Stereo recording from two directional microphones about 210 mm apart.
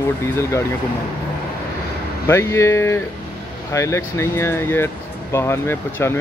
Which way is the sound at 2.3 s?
15° left (ahead or behind).